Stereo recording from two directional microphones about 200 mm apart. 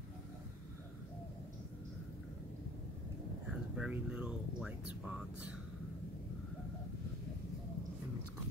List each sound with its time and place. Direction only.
3.4 s air conditioning: 5° right (ahead or behind)